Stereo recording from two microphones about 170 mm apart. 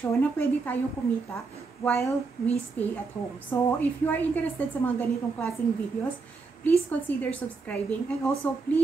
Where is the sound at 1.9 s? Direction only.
15° left (ahead or behind).